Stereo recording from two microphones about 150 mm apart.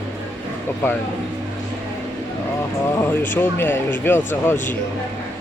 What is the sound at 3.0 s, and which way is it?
Speech, 10° left (ahead or behind).